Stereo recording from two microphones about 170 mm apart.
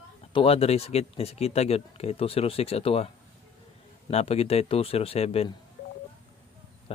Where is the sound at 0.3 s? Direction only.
35° left (ahead or behind).